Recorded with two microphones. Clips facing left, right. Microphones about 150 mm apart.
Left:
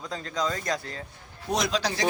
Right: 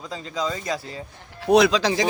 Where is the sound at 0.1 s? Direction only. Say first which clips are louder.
Right 2 dB; 5° right (ahead or behind).